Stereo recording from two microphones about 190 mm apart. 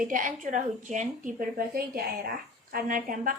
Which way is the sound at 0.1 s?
45° right (ahead or behind).